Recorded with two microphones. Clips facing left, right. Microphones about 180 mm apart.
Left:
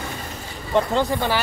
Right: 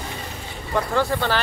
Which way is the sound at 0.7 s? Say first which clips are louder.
Left 2 dB; 20° left (ahead or behind).